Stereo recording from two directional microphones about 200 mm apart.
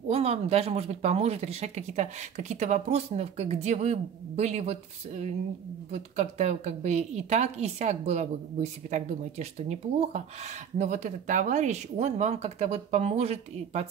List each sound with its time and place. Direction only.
0.1 s speech: 30° right (ahead or behind)